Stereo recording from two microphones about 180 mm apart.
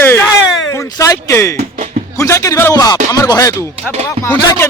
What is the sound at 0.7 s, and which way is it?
Speech, 15° left (ahead or behind).